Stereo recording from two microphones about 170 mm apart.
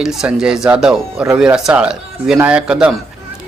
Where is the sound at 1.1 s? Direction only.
15° right (ahead or behind).